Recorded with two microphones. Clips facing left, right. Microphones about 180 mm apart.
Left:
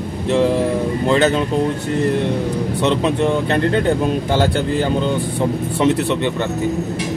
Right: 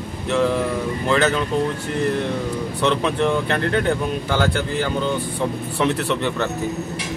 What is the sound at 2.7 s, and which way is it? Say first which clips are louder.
Speech: left 2 dB; 20° left (ahead or behind).